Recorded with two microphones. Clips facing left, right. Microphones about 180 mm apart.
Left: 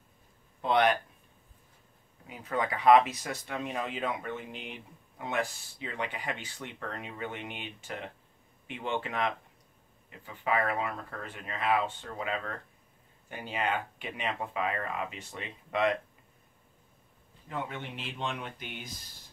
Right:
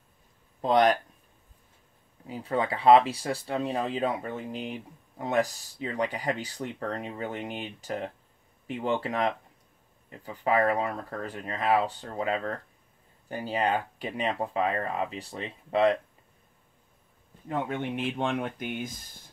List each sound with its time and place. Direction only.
0.6 s speech: 35° right (ahead or behind)
2.2 s speech: 30° right (ahead or behind)
17.5 s speech: 50° right (ahead or behind)